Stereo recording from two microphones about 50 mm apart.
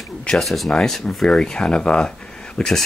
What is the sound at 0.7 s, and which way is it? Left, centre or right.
Speech, centre.